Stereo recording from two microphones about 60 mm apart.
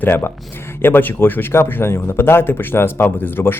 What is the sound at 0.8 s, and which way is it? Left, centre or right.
A man's voice, left.